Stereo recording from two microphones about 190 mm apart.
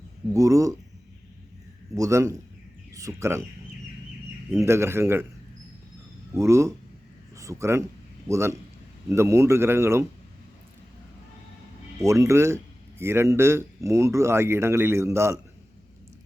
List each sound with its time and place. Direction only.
0.3 s speech: 15° right (ahead or behind)
2.0 s speech: 15° right (ahead or behind)
4.5 s speech: 15° right (ahead or behind)
6.3 s speech: 15° right (ahead or behind)
11.9 s speech: 15° right (ahead or behind)